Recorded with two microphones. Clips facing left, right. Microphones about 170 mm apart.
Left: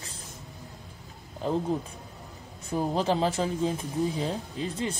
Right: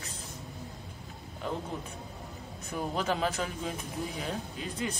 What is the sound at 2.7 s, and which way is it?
Speech, 30° left (ahead or behind).